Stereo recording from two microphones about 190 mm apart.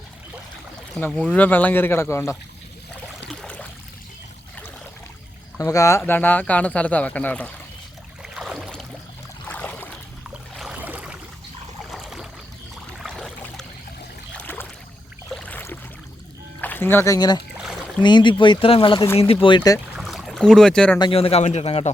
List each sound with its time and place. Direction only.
0.9 s speech: 5° left (ahead or behind)
3.2 s a sound: 5° left (ahead or behind)
5.5 s speech: 15° left (ahead or behind)
8.3 s boat: centre (ahead or behind)
10.2 s a sound: 5° right (ahead or behind)
13.0 s boat: centre (ahead or behind)
15.3 s a sound: 5° left (ahead or behind)
16.6 s speech: 10° left (ahead or behind)
20.0 s boat: centre (ahead or behind)
21.0 s a man's voice: 30° left (ahead or behind)